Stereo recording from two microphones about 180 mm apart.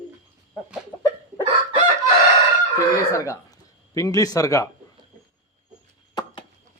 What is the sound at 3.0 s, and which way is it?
A man's voice, 15° left (ahead or behind).